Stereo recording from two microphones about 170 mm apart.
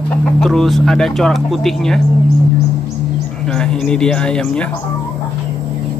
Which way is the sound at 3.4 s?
5° left (ahead or behind).